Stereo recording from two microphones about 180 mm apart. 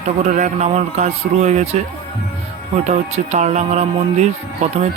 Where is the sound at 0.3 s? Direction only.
45° right (ahead or behind).